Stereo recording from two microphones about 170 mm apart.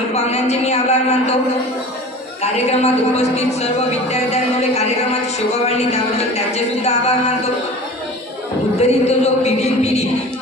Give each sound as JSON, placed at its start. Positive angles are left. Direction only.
{"t": 0.1, "sound": "speech", "side_deg": 40}
{"t": 2.4, "sound": "speech", "side_deg": 40}
{"t": 8.7, "sound": "speech", "side_deg": 40}